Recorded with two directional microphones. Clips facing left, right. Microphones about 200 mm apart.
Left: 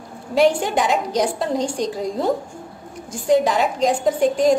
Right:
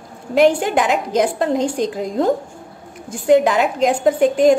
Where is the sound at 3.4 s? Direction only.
60° right (ahead or behind).